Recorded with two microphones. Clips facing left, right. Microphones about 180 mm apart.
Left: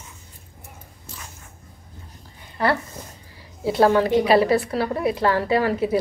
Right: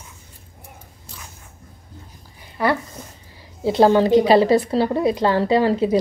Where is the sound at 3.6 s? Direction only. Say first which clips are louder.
Right 3 dB; 25° right (ahead or behind).